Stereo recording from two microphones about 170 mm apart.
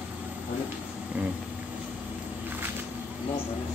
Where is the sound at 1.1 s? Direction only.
10° right (ahead or behind).